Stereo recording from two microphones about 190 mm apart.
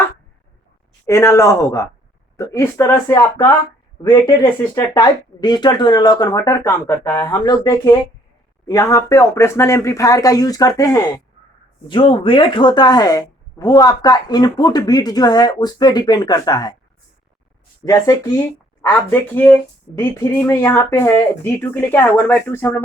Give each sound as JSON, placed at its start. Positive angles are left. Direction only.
{"t": 1.0, "sound": "speech", "side_deg": 15}
{"t": 4.7, "sound": "speech", "side_deg": 20}
{"t": 17.8, "sound": "speech", "side_deg": 20}